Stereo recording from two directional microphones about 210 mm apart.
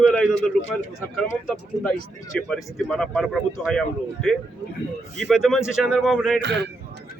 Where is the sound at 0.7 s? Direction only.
Centre (ahead or behind).